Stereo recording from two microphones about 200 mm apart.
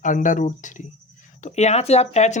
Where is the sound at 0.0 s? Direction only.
40° left (ahead or behind).